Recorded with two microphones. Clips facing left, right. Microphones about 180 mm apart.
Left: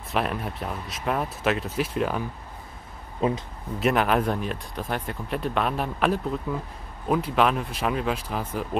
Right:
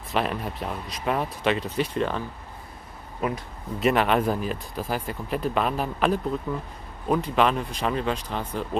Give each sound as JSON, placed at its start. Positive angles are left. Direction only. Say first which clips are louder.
{"t": 0.1, "sound": "speech", "louder": "even", "side_deg": 0}
{"t": 3.2, "sound": "speech", "louder": "left 3 dB", "side_deg": 25}
{"t": 3.8, "sound": "speech", "louder": "right 1 dB", "side_deg": 0}